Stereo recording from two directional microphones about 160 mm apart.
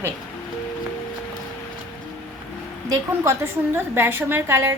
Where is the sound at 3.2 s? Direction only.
15° right (ahead or behind).